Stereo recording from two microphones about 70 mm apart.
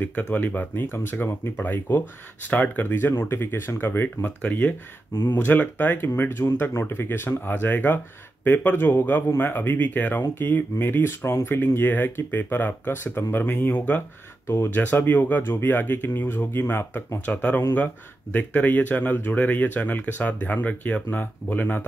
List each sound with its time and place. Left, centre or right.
0.3 s speech: left
4.4 s speech: left
5.1 s speech: left
17.3 s speech: left